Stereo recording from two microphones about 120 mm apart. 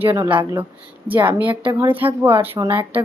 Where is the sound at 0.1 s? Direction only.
20° right (ahead or behind).